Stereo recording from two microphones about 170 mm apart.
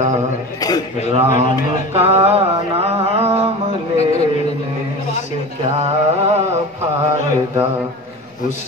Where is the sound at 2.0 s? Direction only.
35° right (ahead or behind).